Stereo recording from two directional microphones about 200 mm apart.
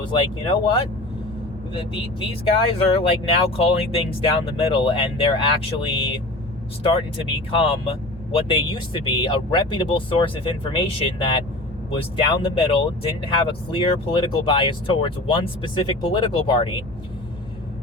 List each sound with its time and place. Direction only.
0.0 s speech: 25° left (ahead or behind)
2.7 s speech: 30° left (ahead or behind)